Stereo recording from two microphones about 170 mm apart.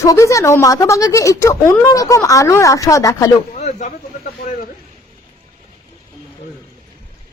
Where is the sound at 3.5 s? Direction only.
40° left (ahead or behind).